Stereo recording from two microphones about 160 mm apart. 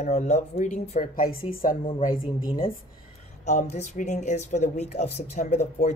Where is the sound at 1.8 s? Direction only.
35° left (ahead or behind).